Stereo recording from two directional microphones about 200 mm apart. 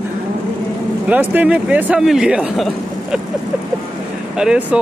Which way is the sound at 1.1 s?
10° right (ahead or behind).